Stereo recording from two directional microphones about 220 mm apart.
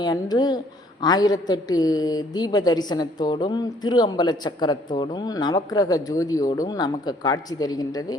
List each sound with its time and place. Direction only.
0.0 s a woman's voice: 20° left (ahead or behind)